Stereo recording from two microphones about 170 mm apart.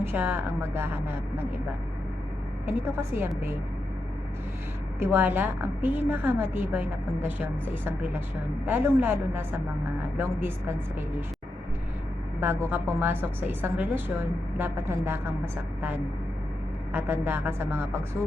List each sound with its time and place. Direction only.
0.0 s a woman's voice: 10° right (ahead or behind)
2.6 s a woman's voice: 15° right (ahead or behind)
4.9 s a woman's voice: 10° right (ahead or behind)
12.4 s a woman's voice: 15° right (ahead or behind)
16.9 s a woman's voice: 10° right (ahead or behind)